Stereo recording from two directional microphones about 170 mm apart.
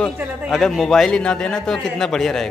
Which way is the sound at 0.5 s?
Centre (ahead or behind).